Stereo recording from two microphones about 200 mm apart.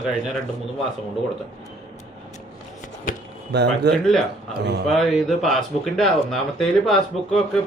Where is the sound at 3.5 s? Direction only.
60° right (ahead or behind).